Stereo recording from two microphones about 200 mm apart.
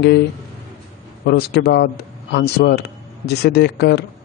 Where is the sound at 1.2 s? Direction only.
55° left (ahead or behind).